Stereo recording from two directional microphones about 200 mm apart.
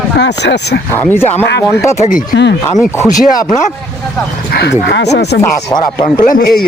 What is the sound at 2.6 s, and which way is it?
Speech, 10° left (ahead or behind).